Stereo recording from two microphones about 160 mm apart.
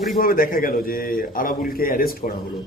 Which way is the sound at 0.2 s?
65° left (ahead or behind).